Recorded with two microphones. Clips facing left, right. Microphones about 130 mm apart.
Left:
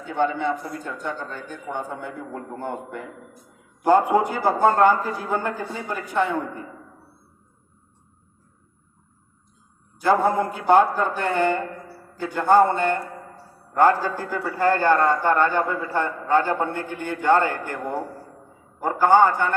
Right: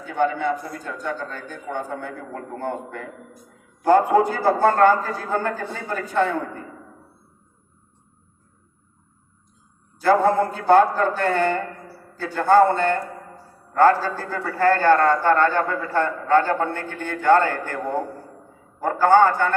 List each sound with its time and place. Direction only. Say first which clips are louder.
0.0 s a man's voice: right 1 dB; 25° left (ahead or behind)
10.0 s a man's voice: right 2 dB; 15° left (ahead or behind)